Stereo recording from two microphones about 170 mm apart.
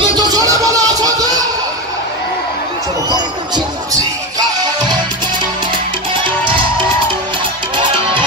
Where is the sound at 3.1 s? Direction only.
25° right (ahead or behind).